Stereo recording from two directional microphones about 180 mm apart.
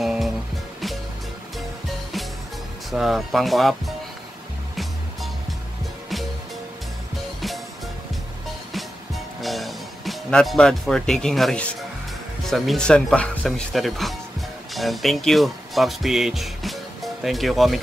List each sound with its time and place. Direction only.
0.0 s music: centre (ahead or behind)
2.9 s speech: centre (ahead or behind)
8.7 s music: centre (ahead or behind)
12.4 s speech: centre (ahead or behind)